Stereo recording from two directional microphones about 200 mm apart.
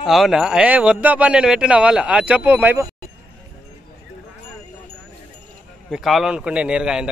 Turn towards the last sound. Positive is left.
turn(degrees=-5)  # may be behind; listen again after turning